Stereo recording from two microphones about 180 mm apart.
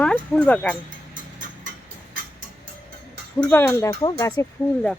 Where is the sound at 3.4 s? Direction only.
20° left (ahead or behind).